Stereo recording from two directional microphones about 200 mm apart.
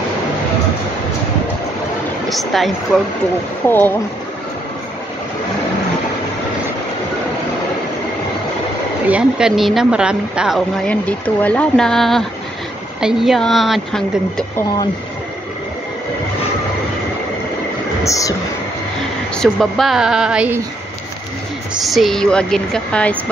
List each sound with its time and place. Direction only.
2.2 s speech: centre (ahead or behind)
9.0 s speech: 5° right (ahead or behind)
10.9 s speech: 5° left (ahead or behind)
18.0 s speech: 15° left (ahead or behind)
19.3 s speech: centre (ahead or behind)
21.8 s speech: centre (ahead or behind)